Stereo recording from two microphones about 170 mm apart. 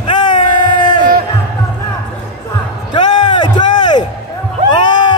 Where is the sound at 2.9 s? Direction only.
25° left (ahead or behind).